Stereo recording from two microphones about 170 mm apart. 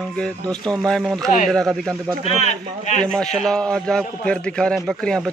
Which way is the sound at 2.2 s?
40° left (ahead or behind).